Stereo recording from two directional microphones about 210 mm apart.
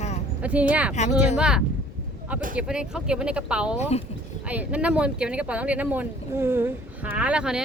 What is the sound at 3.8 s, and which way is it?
Speech, 30° left (ahead or behind).